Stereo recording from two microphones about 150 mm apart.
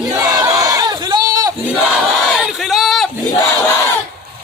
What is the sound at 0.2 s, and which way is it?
Crowd, 25° right (ahead or behind).